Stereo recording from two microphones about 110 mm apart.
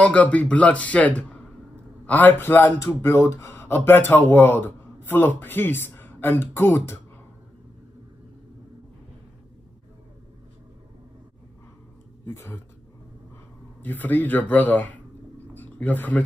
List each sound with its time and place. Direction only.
0.0 s speech: 10° left (ahead or behind)
12.3 s speech: 20° left (ahead or behind)
13.8 s speech: 15° left (ahead or behind)
15.5 s a sound: 15° left (ahead or behind)